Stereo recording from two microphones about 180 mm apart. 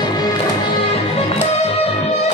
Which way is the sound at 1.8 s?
35° left (ahead or behind).